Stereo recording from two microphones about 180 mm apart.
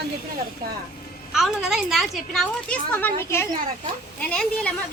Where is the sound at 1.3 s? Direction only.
Centre (ahead or behind).